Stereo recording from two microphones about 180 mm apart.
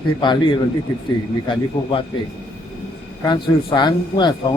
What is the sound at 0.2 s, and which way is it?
Speech, 25° left (ahead or behind).